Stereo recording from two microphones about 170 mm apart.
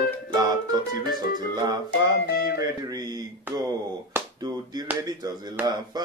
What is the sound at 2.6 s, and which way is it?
Speech, 20° right (ahead or behind).